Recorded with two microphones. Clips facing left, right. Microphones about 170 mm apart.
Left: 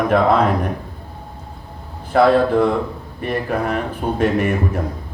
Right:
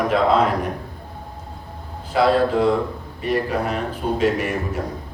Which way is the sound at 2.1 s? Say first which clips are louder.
Left 4 dB; 55° left (ahead or behind).